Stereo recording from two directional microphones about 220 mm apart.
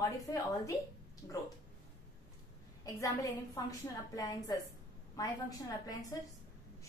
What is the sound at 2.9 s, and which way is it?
A woman's voice, 15° left (ahead or behind).